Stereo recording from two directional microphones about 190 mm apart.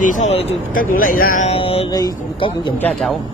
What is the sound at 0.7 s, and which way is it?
Speech, 45° left (ahead or behind).